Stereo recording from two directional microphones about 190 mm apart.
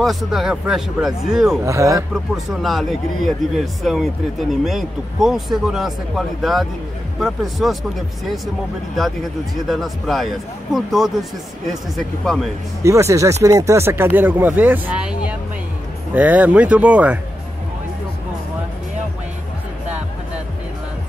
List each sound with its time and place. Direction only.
0.0 s speech: centre (ahead or behind)
1.6 s speech: 15° right (ahead or behind)
2.3 s speech: centre (ahead or behind)
9.7 s speech: centre (ahead or behind)
12.8 s speech: 15° right (ahead or behind)